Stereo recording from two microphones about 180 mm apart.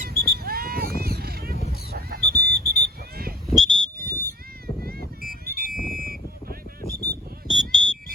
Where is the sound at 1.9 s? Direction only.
60° right (ahead or behind).